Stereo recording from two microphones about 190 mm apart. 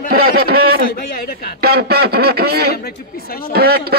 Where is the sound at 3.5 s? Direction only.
55° right (ahead or behind).